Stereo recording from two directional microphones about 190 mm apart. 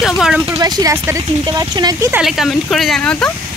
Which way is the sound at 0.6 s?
20° right (ahead or behind).